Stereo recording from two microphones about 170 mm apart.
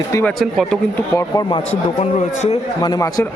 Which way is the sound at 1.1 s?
25° left (ahead or behind).